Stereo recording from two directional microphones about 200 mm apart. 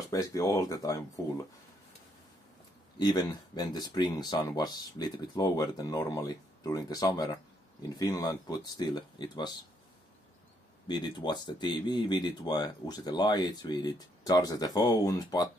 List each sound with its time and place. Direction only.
0.1 s speech: 15° left (ahead or behind)
3.0 s speech: 20° left (ahead or behind)
10.9 s speech: 20° left (ahead or behind)